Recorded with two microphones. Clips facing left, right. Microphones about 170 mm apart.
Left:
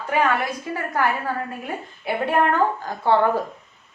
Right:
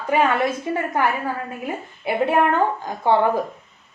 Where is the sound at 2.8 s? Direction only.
15° right (ahead or behind).